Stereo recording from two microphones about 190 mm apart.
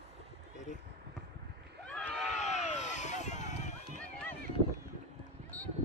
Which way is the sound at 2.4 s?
35° left (ahead or behind).